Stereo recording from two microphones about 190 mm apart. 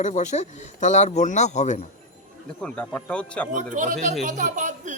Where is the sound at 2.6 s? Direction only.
5° left (ahead or behind).